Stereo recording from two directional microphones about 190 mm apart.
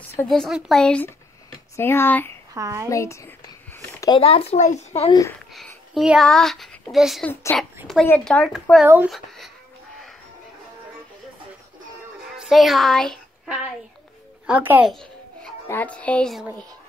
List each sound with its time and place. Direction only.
0.3 s a child's voice: centre (ahead or behind)
1.8 s music: 10° left (ahead or behind)
2.5 s a woman's voice: 20° right (ahead or behind)
2.9 s a sound: 15° left (ahead or behind)
4.2 s speech: 30° left (ahead or behind)
5.1 s music: 15° left (ahead or behind)
5.9 s a child's voice: centre (ahead or behind)
8.8 s a woman's voice: 10° right (ahead or behind)
12.4 s speech: centre (ahead or behind)
14.4 s a woman's voice: 10° right (ahead or behind)
15.7 s music: 10° left (ahead or behind)